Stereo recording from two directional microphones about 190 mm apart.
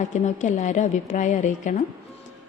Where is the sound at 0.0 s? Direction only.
40° left (ahead or behind).